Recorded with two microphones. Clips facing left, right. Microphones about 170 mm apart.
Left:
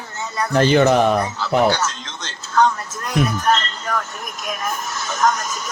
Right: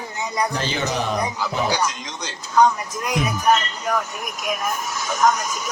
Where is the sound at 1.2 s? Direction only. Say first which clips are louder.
Left 6 dB; 15° right (ahead or behind).